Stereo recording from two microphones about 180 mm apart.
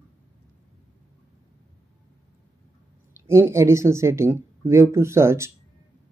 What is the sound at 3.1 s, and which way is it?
Speech, 15° right (ahead or behind).